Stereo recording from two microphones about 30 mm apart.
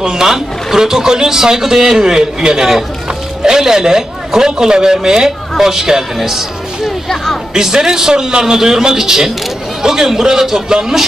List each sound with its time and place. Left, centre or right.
0.0 s a man's voice: centre